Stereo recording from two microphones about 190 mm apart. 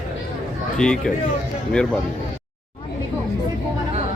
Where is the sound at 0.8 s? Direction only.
5° left (ahead or behind).